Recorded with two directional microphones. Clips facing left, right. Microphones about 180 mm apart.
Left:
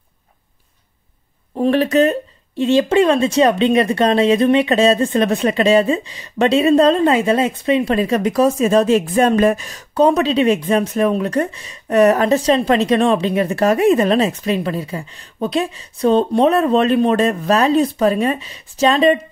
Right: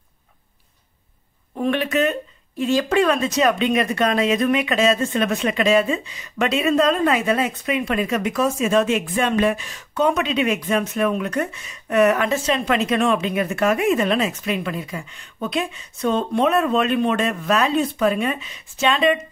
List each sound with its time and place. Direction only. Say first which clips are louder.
1.6 s speech: left 6 dB; 35° left (ahead or behind)